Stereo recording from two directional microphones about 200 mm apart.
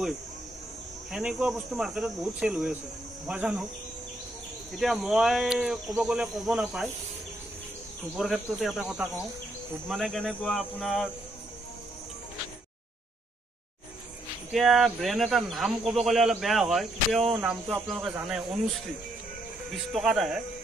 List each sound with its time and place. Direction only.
1.1 s speech: 5° right (ahead or behind)
4.7 s speech: centre (ahead or behind)
8.2 s speech: centre (ahead or behind)
14.5 s speech: centre (ahead or behind)
19.7 s speech: centre (ahead or behind)